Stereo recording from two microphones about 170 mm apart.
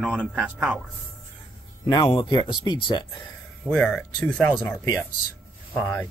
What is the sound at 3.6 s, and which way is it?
Speech, 5° left (ahead or behind).